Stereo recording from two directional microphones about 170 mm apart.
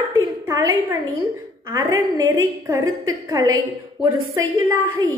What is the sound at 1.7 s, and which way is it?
A woman's voice, 20° right (ahead or behind).